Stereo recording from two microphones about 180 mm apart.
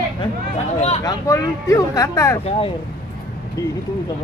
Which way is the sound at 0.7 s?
35° left (ahead or behind).